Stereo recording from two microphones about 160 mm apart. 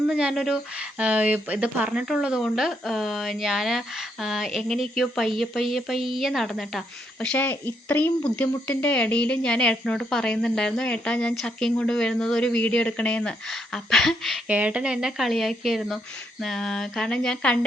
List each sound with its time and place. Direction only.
0.1 s a woman's voice: 5° right (ahead or behind)